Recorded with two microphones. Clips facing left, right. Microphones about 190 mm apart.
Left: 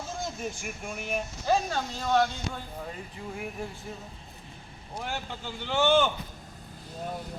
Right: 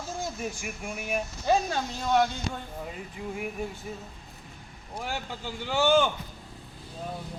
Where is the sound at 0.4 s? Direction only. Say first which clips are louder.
Right 1 dB; 5° right (ahead or behind).